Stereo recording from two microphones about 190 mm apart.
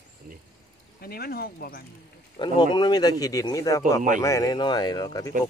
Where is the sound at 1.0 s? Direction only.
55° left (ahead or behind).